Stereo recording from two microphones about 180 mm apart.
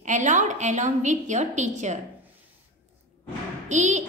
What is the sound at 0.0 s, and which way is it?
A woman's voice, 45° right (ahead or behind).